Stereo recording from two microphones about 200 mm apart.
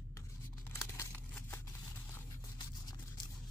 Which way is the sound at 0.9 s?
10° left (ahead or behind).